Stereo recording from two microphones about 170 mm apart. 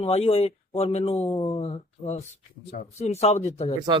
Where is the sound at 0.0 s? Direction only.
40° left (ahead or behind).